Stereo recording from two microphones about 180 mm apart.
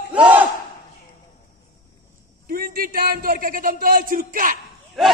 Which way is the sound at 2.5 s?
55° right (ahead or behind).